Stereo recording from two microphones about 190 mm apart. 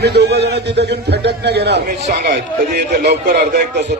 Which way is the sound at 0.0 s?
60° right (ahead or behind).